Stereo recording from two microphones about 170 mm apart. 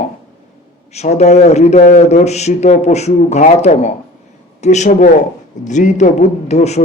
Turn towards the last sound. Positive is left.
turn(degrees=40)  # may be behind; listen again after turning